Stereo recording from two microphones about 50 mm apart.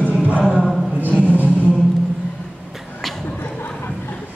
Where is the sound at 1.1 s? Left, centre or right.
Right.